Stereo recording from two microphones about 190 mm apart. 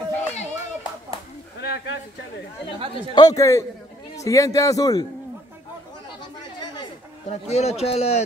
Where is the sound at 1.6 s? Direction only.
60° left (ahead or behind).